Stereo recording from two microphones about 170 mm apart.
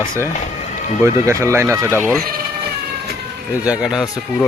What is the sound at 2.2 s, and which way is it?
Speech, 60° right (ahead or behind).